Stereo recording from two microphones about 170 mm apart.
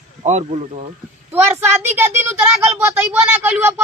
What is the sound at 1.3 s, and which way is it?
Speech, 15° right (ahead or behind).